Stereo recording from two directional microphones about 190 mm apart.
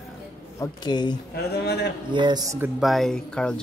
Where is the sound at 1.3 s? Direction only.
60° left (ahead or behind).